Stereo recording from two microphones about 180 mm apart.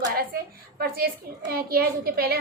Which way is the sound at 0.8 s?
60° right (ahead or behind).